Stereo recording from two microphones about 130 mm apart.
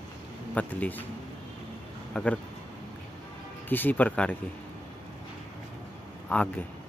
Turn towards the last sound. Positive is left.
turn(degrees=10)  # may be behind; listen again after turning